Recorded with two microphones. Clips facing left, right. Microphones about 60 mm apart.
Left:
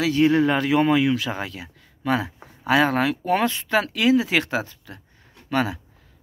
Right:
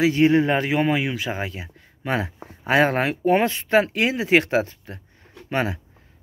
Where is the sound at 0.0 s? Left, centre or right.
Right.